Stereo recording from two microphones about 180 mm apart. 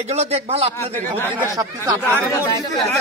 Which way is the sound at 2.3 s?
20° left (ahead or behind).